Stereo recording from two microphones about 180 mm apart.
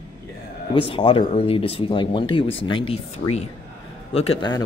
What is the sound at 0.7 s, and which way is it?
Speech, 30° left (ahead or behind).